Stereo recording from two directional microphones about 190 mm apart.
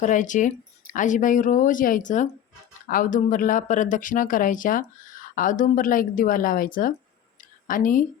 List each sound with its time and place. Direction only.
0.0 s speech: 40° left (ahead or behind)